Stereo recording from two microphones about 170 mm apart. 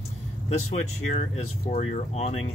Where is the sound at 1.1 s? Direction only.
40° left (ahead or behind).